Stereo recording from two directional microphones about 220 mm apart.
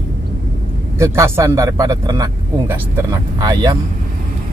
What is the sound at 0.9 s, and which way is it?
Speech, 15° right (ahead or behind).